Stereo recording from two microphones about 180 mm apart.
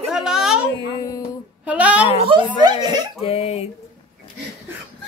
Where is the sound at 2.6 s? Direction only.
25° right (ahead or behind).